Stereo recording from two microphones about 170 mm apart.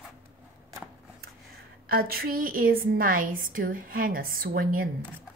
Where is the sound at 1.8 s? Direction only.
60° right (ahead or behind).